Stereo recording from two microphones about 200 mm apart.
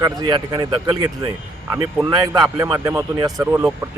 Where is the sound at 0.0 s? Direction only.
20° right (ahead or behind).